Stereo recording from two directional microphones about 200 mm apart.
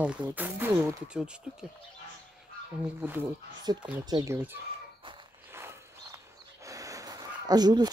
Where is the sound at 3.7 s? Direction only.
20° right (ahead or behind).